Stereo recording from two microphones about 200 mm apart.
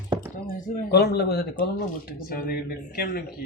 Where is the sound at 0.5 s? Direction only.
45° left (ahead or behind).